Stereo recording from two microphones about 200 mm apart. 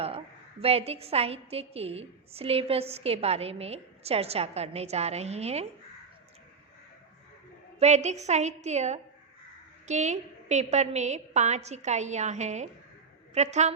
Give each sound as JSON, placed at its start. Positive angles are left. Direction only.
{"t": 0.6, "sound": "a woman's voice", "side_deg": -30}
{"t": 7.8, "sound": "a woman's voice", "side_deg": -35}